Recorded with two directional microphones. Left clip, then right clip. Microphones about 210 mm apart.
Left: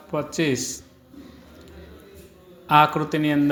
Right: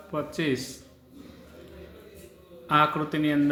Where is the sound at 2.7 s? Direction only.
25° left (ahead or behind).